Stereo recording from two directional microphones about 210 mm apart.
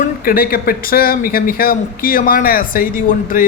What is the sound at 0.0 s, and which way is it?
A man's voice, 45° left (ahead or behind).